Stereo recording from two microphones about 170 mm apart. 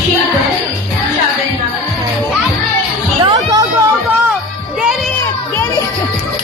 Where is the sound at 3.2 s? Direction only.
25° right (ahead or behind).